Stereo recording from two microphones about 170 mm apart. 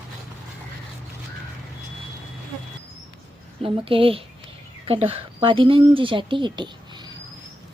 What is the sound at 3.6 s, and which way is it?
Speech, 30° right (ahead or behind).